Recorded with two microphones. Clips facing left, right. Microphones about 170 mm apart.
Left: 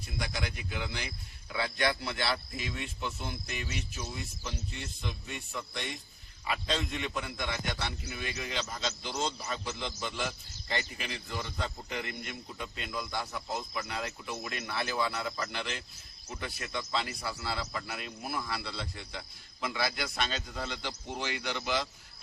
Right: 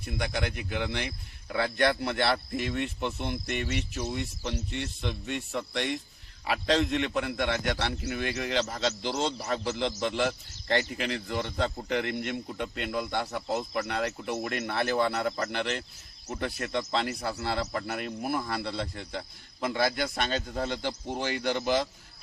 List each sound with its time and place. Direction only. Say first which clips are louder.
0.0 s a man's voice: right 5 dB; 60° right (ahead or behind)
14.3 s speech: right 5 dB; 50° right (ahead or behind)